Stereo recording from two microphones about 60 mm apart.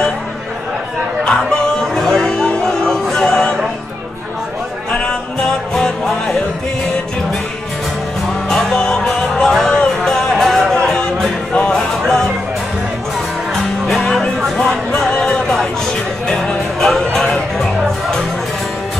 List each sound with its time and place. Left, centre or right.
1.5 s music: centre
4.9 s music: centre
8.5 s music: centre
12.0 s music: centre
14.0 s music: centre
16.8 s music: centre